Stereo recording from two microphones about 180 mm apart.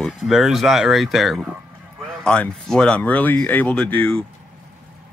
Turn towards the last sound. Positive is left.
turn(degrees=5)  # may be behind; listen again after turning